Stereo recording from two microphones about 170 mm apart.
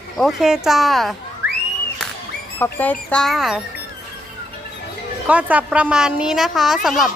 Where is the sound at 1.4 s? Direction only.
70° left (ahead or behind).